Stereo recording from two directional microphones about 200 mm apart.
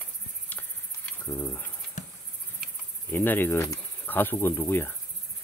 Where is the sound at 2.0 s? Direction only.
40° left (ahead or behind).